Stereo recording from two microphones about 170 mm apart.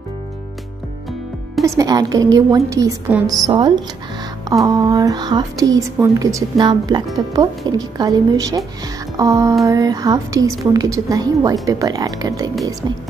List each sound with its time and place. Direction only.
1.6 s speech: 20° right (ahead or behind)